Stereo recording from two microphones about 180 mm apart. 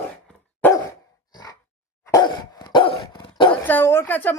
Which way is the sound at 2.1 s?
25° left (ahead or behind).